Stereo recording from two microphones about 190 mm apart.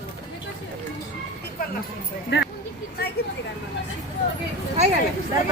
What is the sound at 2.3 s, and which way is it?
Speech, 65° left (ahead or behind).